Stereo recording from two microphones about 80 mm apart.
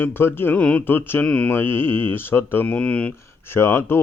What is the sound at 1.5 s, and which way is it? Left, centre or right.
Speech, left.